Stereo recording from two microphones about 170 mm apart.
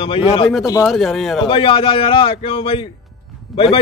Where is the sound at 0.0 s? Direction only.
30° left (ahead or behind).